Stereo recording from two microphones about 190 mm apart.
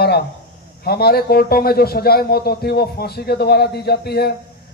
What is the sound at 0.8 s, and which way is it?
A man's voice, 55° left (ahead or behind).